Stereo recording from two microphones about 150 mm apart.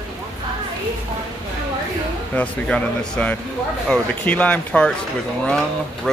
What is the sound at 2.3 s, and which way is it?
Speech, 10° left (ahead or behind).